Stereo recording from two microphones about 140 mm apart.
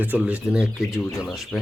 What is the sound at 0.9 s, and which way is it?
Speech, 20° left (ahead or behind).